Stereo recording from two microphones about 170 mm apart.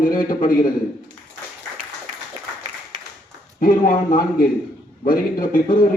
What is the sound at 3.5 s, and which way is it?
A man's voice, 55° left (ahead or behind).